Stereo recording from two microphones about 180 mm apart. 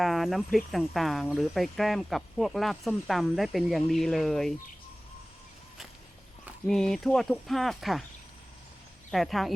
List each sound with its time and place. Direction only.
0.0 s speech: centre (ahead or behind)
6.7 s speech: centre (ahead or behind)
9.0 s speech: centre (ahead or behind)